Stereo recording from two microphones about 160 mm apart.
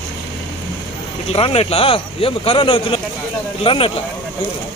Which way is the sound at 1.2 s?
40° left (ahead or behind).